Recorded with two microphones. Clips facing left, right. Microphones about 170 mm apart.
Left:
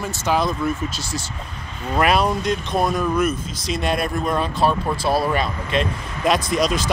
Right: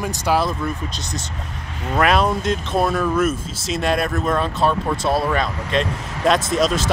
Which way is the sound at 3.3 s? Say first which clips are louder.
Right 1 dB; centre (ahead or behind).